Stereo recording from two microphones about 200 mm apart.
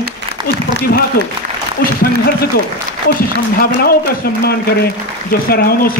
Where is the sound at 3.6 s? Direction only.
50° left (ahead or behind).